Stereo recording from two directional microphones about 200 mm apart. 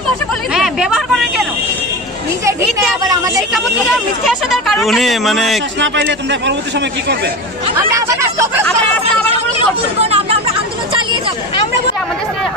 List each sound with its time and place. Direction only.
0.5 s a sound: 5° right (ahead or behind)
3.5 s speech: centre (ahead or behind)
5.8 s a man's voice: 65° right (ahead or behind)
7.7 s speech: 15° right (ahead or behind)
9.9 s chatter: 30° right (ahead or behind)